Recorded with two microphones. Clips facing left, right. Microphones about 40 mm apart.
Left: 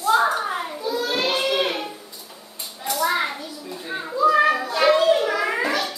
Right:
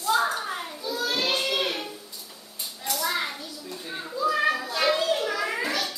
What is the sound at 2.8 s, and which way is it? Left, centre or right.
Children playing, centre.